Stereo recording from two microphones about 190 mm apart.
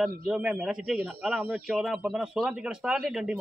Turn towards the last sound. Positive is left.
turn(degrees=0)  # may be behind; listen again after turning